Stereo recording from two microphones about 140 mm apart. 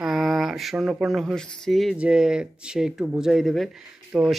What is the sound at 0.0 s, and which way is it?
Speech, centre (ahead or behind).